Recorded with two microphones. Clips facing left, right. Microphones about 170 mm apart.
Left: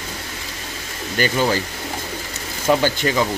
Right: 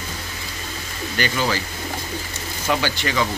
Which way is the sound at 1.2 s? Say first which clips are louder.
Left 4 dB; 45° left (ahead or behind).